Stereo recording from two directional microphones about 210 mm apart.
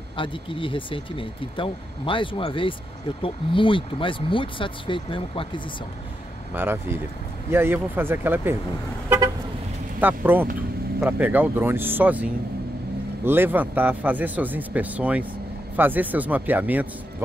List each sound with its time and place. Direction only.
0.2 s speech: 25° left (ahead or behind)
6.5 s speech: 10° right (ahead or behind)
9.9 s speech: 10° right (ahead or behind)